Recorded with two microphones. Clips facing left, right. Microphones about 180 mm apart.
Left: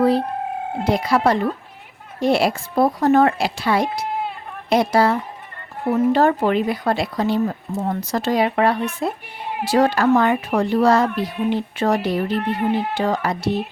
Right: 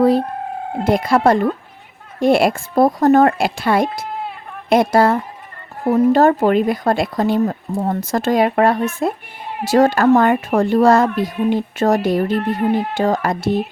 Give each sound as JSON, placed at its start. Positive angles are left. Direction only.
{"t": 0.9, "sound": "speech", "side_deg": -50}